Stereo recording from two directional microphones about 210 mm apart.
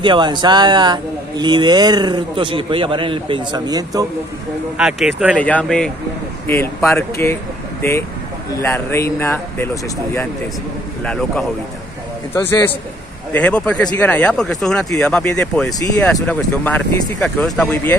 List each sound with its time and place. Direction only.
0.0 s speech: 20° right (ahead or behind)
4.7 s speech: centre (ahead or behind)
5.4 s speech: 5° left (ahead or behind)
8.5 s speech: 10° left (ahead or behind)
11.1 s speech: 5° left (ahead or behind)